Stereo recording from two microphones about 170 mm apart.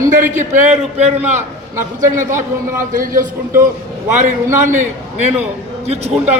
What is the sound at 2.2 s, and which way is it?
A man's voice, 50° right (ahead or behind).